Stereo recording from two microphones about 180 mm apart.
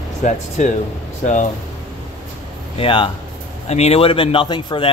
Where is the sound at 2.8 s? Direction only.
30° left (ahead or behind).